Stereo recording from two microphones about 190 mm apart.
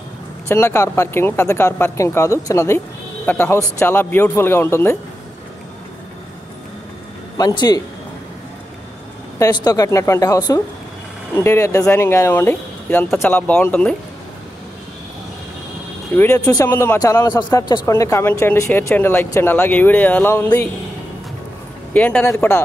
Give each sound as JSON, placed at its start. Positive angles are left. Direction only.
{"t": 0.5, "sound": "a man's voice", "side_deg": 15}
{"t": 7.3, "sound": "speech", "side_deg": 20}
{"t": 9.7, "sound": "a man's voice", "side_deg": 15}
{"t": 16.2, "sound": "a man's voice", "side_deg": 10}
{"t": 21.9, "sound": "a man's voice", "side_deg": 10}